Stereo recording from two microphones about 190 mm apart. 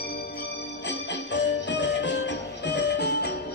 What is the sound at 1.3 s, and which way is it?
Music, 70° left (ahead or behind).